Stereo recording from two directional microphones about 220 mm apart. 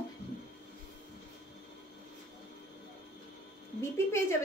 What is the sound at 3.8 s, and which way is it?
Speech, 10° left (ahead or behind).